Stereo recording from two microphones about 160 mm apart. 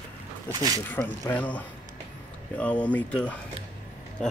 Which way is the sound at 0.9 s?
10° left (ahead or behind).